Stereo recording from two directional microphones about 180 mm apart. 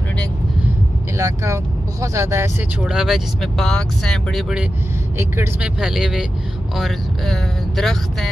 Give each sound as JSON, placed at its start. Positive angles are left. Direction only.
{"t": 1.1, "sound": "speech", "side_deg": -15}
{"t": 2.8, "sound": "speech", "side_deg": -5}
{"t": 5.2, "sound": "speech", "side_deg": -15}